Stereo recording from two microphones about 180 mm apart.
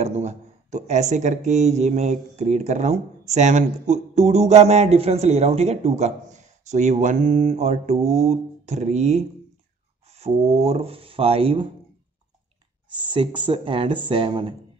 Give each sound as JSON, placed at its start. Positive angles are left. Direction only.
{"t": 0.0, "sound": "speech", "side_deg": -40}
{"t": 13.1, "sound": "speech", "side_deg": -30}